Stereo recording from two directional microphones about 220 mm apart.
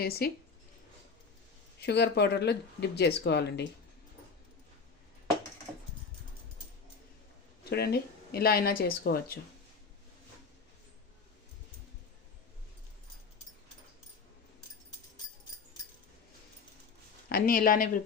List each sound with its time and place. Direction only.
0.0 s speech: 45° left (ahead or behind)
1.8 s speech: 50° left (ahead or behind)
7.6 s speech: 45° left (ahead or behind)
17.2 s speech: 40° left (ahead or behind)